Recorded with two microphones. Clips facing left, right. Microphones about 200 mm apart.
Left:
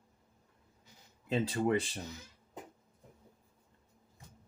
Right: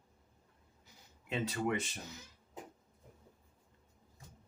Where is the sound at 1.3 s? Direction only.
30° left (ahead or behind).